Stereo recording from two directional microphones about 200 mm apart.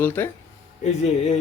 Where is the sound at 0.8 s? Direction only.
35° left (ahead or behind).